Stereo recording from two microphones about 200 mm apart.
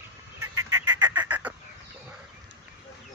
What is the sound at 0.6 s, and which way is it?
Fowl, 15° right (ahead or behind).